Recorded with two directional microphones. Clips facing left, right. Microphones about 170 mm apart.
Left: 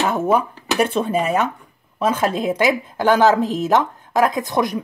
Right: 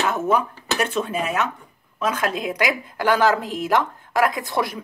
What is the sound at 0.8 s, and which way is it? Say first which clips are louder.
A woman's voice: left 5 dB; 30° left (ahead or behind).